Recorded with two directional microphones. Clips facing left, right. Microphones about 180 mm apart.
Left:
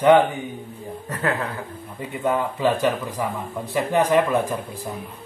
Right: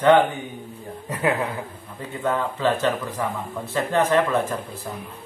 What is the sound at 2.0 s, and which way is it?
Speech, 15° left (ahead or behind).